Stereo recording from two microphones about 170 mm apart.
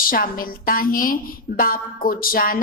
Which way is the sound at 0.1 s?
60° left (ahead or behind).